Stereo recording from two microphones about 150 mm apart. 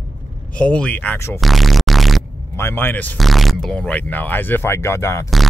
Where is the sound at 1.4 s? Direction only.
Centre (ahead or behind).